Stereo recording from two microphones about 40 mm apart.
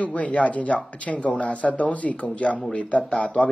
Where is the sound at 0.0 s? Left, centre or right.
Left.